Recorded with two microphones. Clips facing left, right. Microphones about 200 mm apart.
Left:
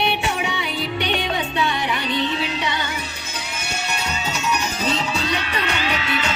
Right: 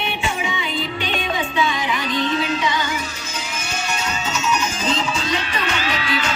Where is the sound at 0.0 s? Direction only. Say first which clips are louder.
Left 2 dB; 70° left (ahead or behind).